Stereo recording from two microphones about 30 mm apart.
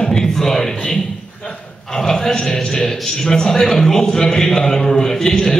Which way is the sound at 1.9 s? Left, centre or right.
Centre.